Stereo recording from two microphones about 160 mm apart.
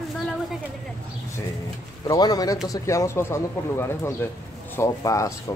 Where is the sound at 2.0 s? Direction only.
25° left (ahead or behind).